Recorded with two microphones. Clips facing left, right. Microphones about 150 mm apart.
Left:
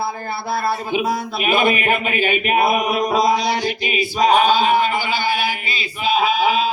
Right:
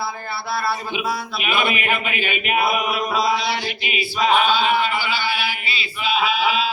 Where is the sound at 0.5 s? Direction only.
45° left (ahead or behind).